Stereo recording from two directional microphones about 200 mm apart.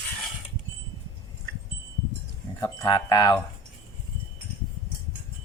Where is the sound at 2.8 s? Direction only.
20° left (ahead or behind).